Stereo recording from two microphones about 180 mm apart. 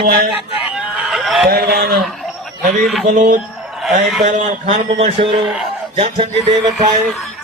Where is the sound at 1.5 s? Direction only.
60° right (ahead or behind).